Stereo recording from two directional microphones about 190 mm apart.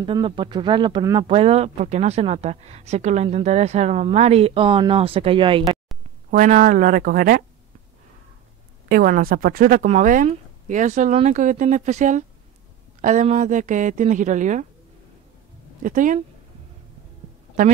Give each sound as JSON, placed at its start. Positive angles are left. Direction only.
{"t": 0.0, "sound": "speech", "side_deg": -25}
{"t": 6.3, "sound": "speech", "side_deg": -45}
{"t": 8.8, "sound": "speech", "side_deg": -50}
{"t": 15.8, "sound": "speech", "side_deg": -45}